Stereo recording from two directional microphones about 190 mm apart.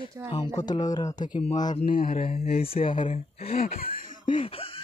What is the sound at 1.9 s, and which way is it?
Speech, 50° left (ahead or behind).